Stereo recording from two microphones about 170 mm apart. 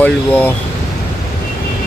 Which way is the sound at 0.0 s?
10° left (ahead or behind).